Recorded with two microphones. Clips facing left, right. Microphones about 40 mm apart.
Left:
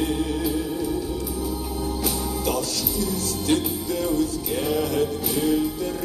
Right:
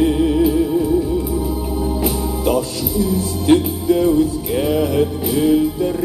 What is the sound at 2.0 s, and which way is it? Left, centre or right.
Music, right.